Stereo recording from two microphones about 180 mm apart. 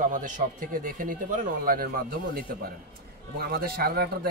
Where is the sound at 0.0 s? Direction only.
45° right (ahead or behind).